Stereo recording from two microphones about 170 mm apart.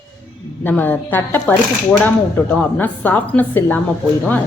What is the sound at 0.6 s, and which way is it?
Speech, 10° left (ahead or behind).